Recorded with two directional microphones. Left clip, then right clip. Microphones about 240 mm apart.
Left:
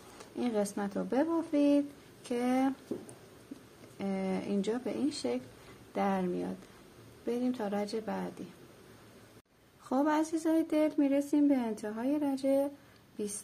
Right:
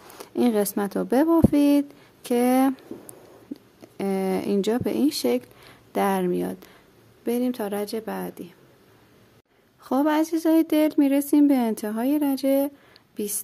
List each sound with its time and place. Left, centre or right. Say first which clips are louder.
0.2 s speech: right 10 dB; right
4.0 s speech: right 11 dB; right
9.8 s speech: right 8 dB; right